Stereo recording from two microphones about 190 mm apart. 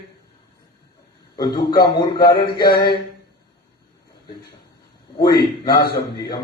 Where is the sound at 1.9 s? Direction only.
20° left (ahead or behind).